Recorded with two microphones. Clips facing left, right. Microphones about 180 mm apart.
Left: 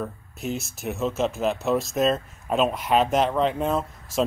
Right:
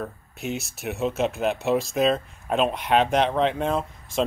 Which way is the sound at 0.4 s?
Centre (ahead or behind).